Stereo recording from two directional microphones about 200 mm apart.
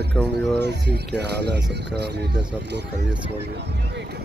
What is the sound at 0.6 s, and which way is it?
Speech, 60° right (ahead or behind).